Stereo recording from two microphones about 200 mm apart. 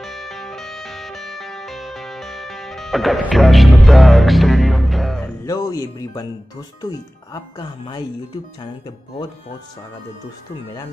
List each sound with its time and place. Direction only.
0.0 s music: centre (ahead or behind)
5.4 s speech: 15° left (ahead or behind)
7.5 s speech: 25° left (ahead or behind)